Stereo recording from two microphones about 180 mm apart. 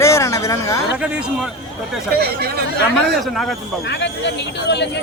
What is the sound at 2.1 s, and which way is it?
Speech, 60° right (ahead or behind).